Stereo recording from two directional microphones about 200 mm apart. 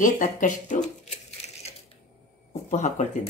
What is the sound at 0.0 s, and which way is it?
Speech, 40° left (ahead or behind).